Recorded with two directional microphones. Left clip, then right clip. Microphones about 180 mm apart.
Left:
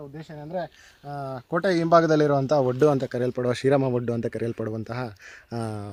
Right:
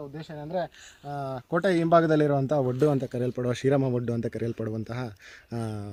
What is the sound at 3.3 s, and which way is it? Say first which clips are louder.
Speech: left 4 dB; 35° left (ahead or behind).